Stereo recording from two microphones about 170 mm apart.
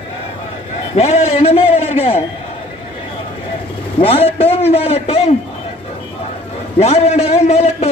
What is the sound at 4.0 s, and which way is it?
A man's voice, 35° left (ahead or behind).